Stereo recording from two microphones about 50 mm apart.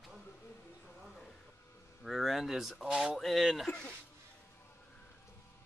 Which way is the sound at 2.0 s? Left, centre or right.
Centre.